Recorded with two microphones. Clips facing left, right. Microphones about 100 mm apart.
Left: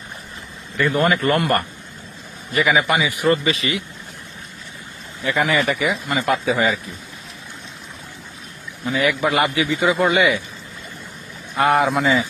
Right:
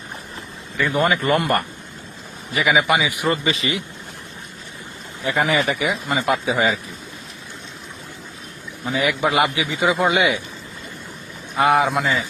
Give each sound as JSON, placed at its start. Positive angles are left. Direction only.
{"t": 0.8, "sound": "a man's voice", "side_deg": -5}
{"t": 2.5, "sound": "a man's voice", "side_deg": -5}
{"t": 5.2, "sound": "a man's voice", "side_deg": -20}
{"t": 8.8, "sound": "a man's voice", "side_deg": -20}
{"t": 11.5, "sound": "a man's voice", "side_deg": 0}